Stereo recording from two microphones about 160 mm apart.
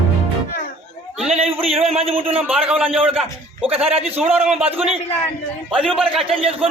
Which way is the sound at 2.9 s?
35° right (ahead or behind).